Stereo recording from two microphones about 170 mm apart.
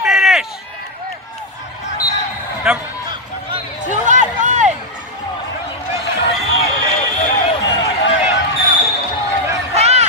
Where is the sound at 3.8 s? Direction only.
45° right (ahead or behind).